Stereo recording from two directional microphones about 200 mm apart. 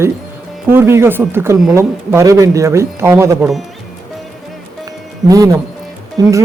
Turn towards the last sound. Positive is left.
turn(degrees=-20)  # may be behind; listen again after turning